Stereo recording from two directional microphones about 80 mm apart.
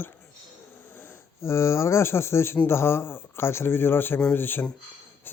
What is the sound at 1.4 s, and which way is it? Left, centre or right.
Speech, left.